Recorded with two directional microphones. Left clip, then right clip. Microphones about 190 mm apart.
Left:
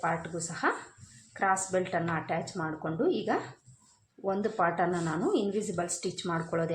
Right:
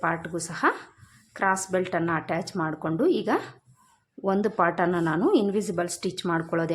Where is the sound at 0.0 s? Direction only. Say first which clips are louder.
Right 4 dB; 45° right (ahead or behind).